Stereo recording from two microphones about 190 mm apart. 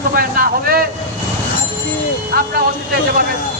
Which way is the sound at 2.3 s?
55° right (ahead or behind).